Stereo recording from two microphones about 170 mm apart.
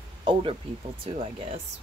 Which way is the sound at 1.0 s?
35° right (ahead or behind).